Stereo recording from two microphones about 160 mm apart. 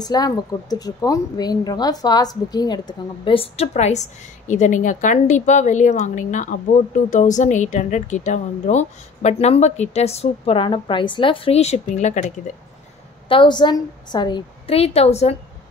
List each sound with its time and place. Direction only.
0.0 s a woman's voice: 25° left (ahead or behind); by 12.3 s 45° left (ahead or behind)
13.3 s a woman's voice: 30° left (ahead or behind)